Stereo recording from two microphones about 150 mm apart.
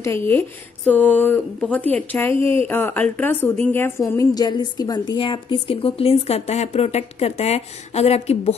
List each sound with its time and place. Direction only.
0.0 s a woman's voice: 15° left (ahead or behind); by 8.5 s 45° left (ahead or behind)